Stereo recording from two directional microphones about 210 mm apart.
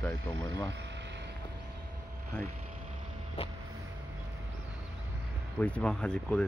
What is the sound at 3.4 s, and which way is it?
Vehicle, 25° left (ahead or behind).